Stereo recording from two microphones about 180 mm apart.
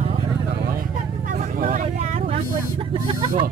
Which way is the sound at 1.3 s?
50° right (ahead or behind).